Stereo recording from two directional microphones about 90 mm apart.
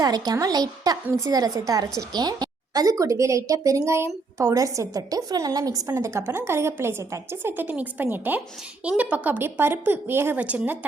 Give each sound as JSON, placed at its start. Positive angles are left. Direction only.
{"t": 0.0, "sound": "a woman's voice", "side_deg": -45}
{"t": 2.1, "sound": "a woman's voice", "side_deg": -50}